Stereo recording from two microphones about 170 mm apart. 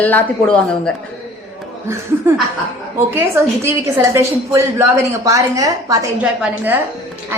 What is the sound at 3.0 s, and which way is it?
A woman's voice, 15° right (ahead or behind).